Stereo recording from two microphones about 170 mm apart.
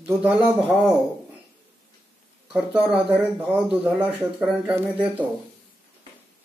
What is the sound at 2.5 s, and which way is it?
Speech, 10° right (ahead or behind).